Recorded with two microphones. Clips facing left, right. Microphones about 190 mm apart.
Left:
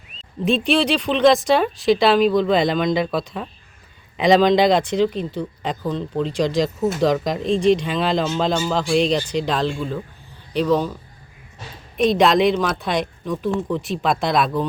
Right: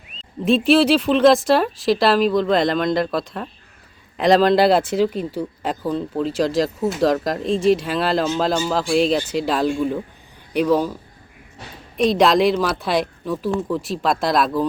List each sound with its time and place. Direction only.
0.4 s speech: centre (ahead or behind)
11.9 s speech: centre (ahead or behind)